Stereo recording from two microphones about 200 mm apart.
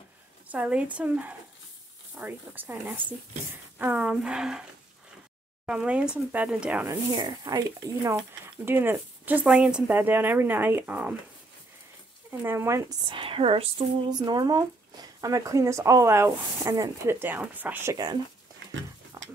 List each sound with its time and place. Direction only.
0.5 s speech: 5° right (ahead or behind)
5.7 s speech: 5° right (ahead or behind)
7.2 s speech: 20° right (ahead or behind)
12.3 s speech: 15° right (ahead or behind)
13.1 s speech: 30° right (ahead or behind)
19.1 s a sound: 15° right (ahead or behind)